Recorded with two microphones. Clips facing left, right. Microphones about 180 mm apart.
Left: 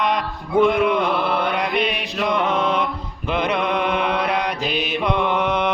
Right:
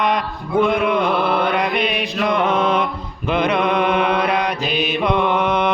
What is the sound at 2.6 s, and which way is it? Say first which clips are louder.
Mantra: right 3 dB; 55° right (ahead or behind).